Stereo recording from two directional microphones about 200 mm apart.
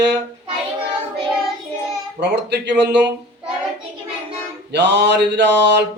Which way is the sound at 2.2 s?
60° right (ahead or behind).